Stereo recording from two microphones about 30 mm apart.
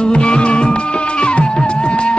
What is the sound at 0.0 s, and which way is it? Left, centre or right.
Music, left.